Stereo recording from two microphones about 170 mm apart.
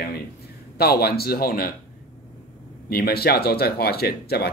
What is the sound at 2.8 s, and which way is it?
Speech, 65° left (ahead or behind).